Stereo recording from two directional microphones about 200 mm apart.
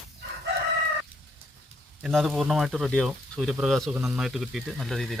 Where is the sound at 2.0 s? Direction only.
Centre (ahead or behind).